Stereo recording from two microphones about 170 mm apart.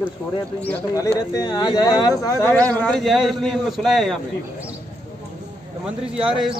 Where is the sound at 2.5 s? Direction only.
10° left (ahead or behind).